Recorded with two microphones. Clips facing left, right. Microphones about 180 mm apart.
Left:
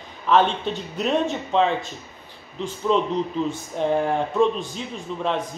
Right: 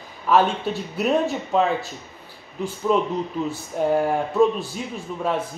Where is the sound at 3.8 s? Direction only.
5° right (ahead or behind).